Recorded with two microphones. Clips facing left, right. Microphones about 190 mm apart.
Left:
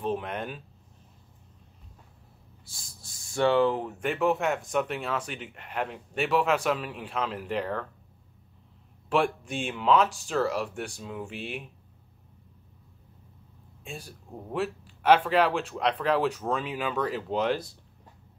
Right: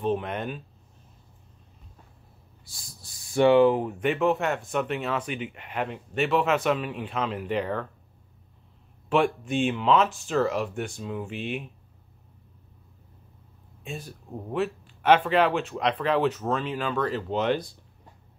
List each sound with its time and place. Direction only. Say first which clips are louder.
0.0 s speech: right 3 dB; centre (ahead or behind)
3.3 s speech: right 5 dB; 15° right (ahead or behind)
4.0 s speech: right 1 dB; centre (ahead or behind)
9.1 s speech: right 3 dB; centre (ahead or behind)
14.5 s speech: right 2 dB; centre (ahead or behind)